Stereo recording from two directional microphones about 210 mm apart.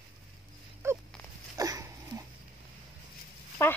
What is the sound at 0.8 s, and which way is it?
Dog, 10° right (ahead or behind).